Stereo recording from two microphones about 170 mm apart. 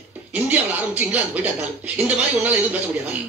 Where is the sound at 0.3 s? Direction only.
10° right (ahead or behind).